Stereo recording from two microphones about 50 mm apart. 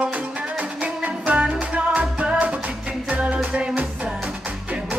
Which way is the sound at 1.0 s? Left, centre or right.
Right.